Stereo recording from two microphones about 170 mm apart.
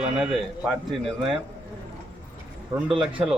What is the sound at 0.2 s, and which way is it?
A man's voice, 5° right (ahead or behind).